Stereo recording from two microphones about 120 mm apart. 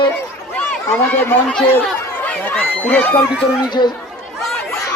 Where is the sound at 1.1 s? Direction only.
15° left (ahead or behind).